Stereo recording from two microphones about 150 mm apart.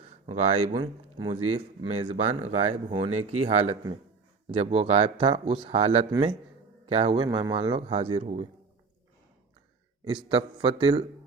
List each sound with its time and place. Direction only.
0.3 s speech: 45° right (ahead or behind)
0.8 s a man's voice: 35° right (ahead or behind)
7.2 s speech: 30° right (ahead or behind)
7.8 s speech: 45° right (ahead or behind)
10.2 s speech: 35° right (ahead or behind)